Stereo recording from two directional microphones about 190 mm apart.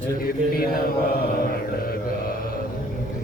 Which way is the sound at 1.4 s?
50° left (ahead or behind).